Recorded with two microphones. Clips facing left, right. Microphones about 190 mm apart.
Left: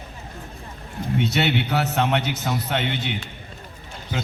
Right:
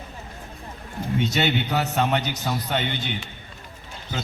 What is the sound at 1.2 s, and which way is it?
A man's voice, 5° left (ahead or behind).